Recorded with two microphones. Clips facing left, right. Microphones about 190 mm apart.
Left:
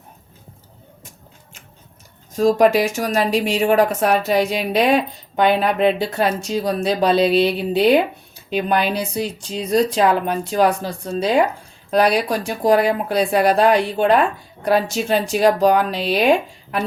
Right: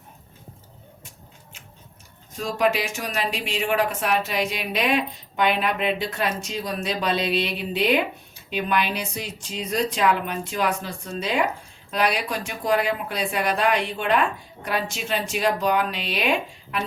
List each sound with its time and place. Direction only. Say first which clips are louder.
2.3 s a woman's voice: left 9 dB; 45° left (ahead or behind)